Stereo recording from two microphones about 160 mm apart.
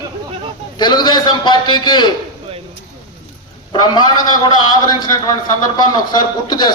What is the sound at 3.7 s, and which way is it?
A man's voice, 25° left (ahead or behind).